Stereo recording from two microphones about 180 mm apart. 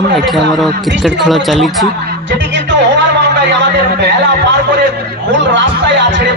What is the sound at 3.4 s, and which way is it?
Speech, 75° right (ahead or behind).